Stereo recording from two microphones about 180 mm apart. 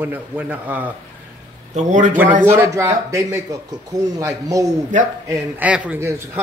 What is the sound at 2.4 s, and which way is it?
Speech, 15° right (ahead or behind).